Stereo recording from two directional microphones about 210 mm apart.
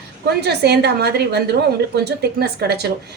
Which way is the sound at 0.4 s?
50° right (ahead or behind).